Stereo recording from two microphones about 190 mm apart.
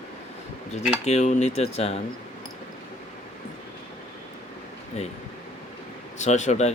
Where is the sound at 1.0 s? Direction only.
35° left (ahead or behind).